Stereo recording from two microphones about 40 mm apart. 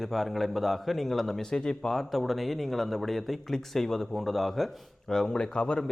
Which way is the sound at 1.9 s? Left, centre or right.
Centre.